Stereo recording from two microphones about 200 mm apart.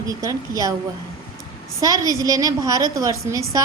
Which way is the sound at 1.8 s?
15° right (ahead or behind).